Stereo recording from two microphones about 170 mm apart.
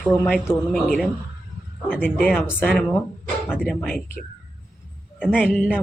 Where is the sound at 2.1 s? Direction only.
Centre (ahead or behind).